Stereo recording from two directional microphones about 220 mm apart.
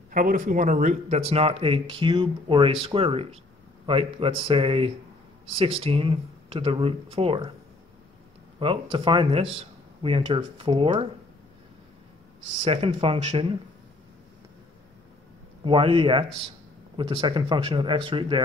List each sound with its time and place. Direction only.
0.1 s speech: 40° right (ahead or behind)
8.5 s speech: 20° right (ahead or behind)
12.6 s speech: 25° right (ahead or behind)
15.6 s speech: 25° right (ahead or behind)